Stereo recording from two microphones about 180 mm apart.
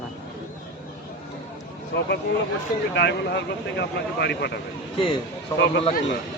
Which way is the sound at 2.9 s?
70° left (ahead or behind).